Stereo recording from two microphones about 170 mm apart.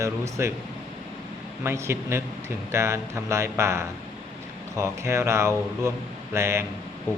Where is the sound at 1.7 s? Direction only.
15° right (ahead or behind).